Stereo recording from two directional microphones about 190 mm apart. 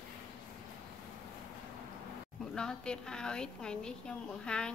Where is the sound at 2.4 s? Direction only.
5° left (ahead or behind).